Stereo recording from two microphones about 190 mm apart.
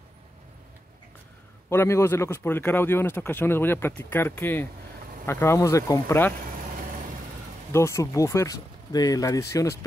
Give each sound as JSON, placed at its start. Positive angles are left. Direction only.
{"t": 1.7, "sound": "a man's voice", "side_deg": 15}
{"t": 7.7, "sound": "a man's voice", "side_deg": 15}